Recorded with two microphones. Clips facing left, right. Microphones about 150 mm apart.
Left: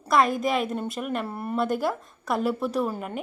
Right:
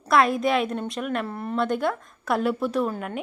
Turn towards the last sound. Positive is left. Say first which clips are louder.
# right 1 dB
turn(degrees=0)  # may be behind; listen again after turning